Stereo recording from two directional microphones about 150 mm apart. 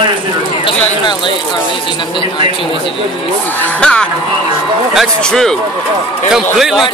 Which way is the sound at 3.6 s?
10° left (ahead or behind).